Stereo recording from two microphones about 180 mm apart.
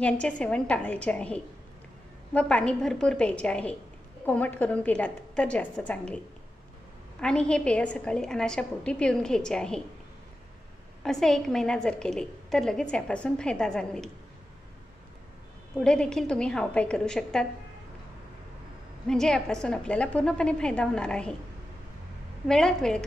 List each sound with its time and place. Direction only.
0.0 s a woman's voice: 5° left (ahead or behind)
11.0 s a woman's voice: centre (ahead or behind)
15.8 s a woman's voice: 5° left (ahead or behind)
19.0 s a woman's voice: 5° left (ahead or behind)
22.5 s a woman's voice: 5° left (ahead or behind)